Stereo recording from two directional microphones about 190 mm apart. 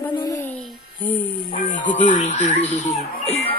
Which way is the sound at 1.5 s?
40° left (ahead or behind).